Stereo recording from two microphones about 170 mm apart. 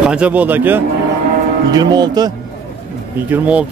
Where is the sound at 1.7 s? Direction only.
25° right (ahead or behind).